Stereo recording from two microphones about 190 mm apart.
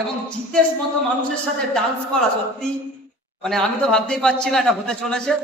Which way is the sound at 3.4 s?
5° left (ahead or behind).